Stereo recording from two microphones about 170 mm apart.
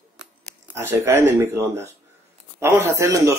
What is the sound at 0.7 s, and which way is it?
Speech, 15° right (ahead or behind).